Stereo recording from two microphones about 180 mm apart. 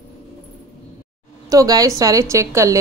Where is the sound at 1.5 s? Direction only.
20° right (ahead or behind).